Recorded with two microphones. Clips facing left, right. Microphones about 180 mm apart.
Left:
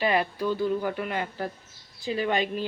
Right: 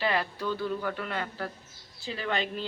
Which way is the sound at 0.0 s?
15° left (ahead or behind).